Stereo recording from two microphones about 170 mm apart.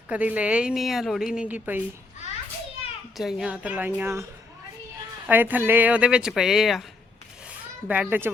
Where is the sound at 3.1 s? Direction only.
Centre (ahead or behind).